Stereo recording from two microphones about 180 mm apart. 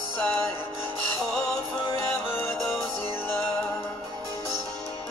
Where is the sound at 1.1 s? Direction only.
20° left (ahead or behind).